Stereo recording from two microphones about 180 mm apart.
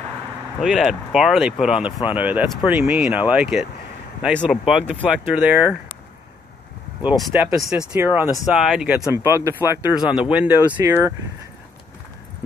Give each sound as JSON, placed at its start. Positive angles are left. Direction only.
{"t": 0.6, "sound": "speech", "side_deg": 0}
{"t": 7.0, "sound": "speech", "side_deg": -5}